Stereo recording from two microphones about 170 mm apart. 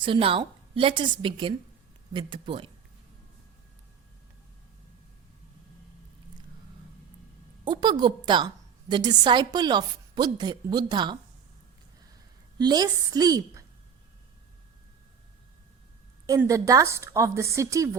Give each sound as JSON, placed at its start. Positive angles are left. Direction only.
{"t": 0.0, "sound": "a woman's voice", "side_deg": -30}
{"t": 7.6, "sound": "a woman's voice", "side_deg": -25}
{"t": 12.5, "sound": "a woman's voice", "side_deg": -25}
{"t": 16.4, "sound": "a woman's voice", "side_deg": -20}